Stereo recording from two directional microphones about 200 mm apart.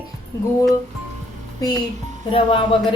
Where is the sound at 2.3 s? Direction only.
25° left (ahead or behind).